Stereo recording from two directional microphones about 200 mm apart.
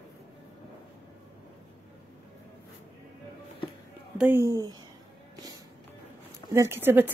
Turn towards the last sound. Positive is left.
turn(degrees=-10)  # may be behind; listen again after turning